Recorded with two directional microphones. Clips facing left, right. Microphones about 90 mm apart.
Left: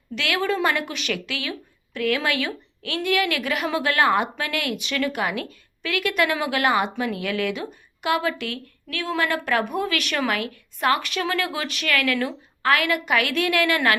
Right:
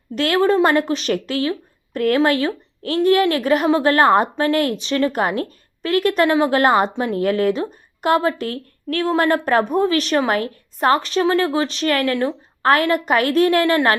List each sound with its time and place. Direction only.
0.2 s speech: 40° right (ahead or behind)